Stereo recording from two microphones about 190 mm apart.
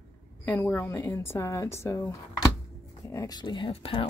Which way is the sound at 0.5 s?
10° left (ahead or behind).